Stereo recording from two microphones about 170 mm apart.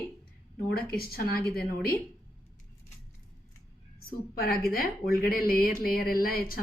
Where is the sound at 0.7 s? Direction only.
65° left (ahead or behind).